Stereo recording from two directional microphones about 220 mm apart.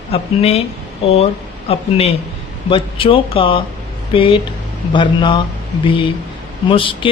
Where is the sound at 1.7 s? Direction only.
25° left (ahead or behind).